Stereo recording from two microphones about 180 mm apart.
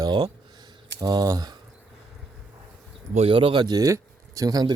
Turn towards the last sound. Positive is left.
turn(degrees=-20)  # may be behind; listen again after turning